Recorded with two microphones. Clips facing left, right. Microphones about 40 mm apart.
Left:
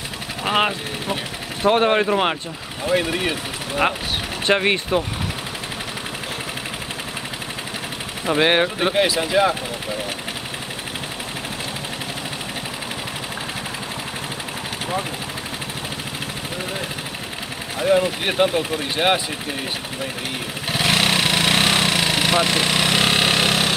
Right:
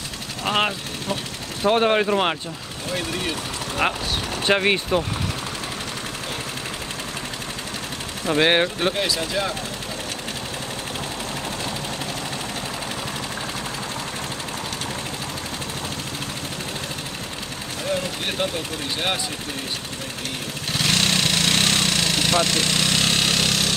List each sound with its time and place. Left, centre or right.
0.5 s speech: centre
2.9 s speech: centre
4.5 s speech: centre
8.3 s speech: centre
8.9 s speech: centre
17.7 s speech: centre
20.7 s vehicle: centre